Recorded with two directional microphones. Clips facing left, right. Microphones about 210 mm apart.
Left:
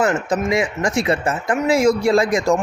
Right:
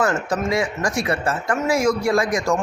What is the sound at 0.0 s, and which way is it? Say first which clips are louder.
Speech: left 2 dB; 20° left (ahead or behind).